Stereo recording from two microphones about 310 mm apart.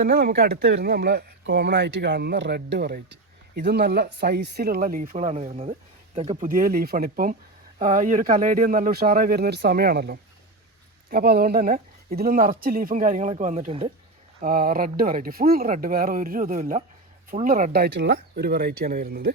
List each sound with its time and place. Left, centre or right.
0.0 s speech: right